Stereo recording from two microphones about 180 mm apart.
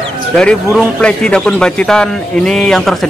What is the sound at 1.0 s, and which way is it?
Speech, 5° left (ahead or behind).